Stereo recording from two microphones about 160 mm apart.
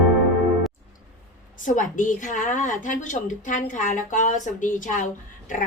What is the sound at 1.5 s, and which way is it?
A woman's voice, 50° left (ahead or behind).